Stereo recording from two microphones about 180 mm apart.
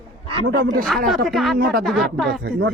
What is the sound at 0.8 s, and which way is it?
Speech, centre (ahead or behind).